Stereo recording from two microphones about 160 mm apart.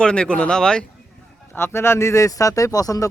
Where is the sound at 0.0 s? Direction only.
5° left (ahead or behind).